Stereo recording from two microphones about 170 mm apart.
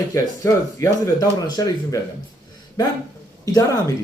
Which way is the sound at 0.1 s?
15° left (ahead or behind).